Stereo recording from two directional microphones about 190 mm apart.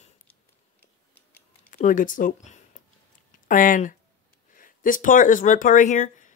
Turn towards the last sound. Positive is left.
turn(degrees=40)  # may be behind; listen again after turning